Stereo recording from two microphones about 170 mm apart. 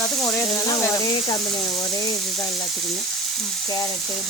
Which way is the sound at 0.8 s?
20° left (ahead or behind).